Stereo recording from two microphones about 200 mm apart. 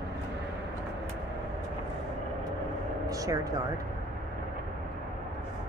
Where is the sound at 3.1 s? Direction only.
15° right (ahead or behind).